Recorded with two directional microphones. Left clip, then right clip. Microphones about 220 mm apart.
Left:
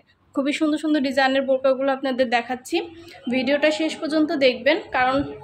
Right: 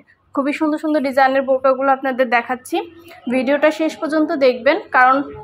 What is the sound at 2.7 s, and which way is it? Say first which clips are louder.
A woman's voice: right 3 dB; 10° right (ahead or behind).